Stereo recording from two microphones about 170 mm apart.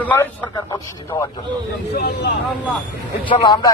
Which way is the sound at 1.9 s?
65° left (ahead or behind).